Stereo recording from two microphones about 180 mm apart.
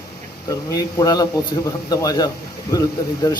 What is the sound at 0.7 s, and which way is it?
Speech, 20° left (ahead or behind).